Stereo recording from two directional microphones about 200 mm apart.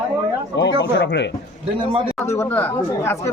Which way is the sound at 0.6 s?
60° left (ahead or behind).